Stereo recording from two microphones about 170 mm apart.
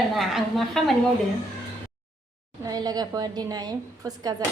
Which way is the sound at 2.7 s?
20° right (ahead or behind).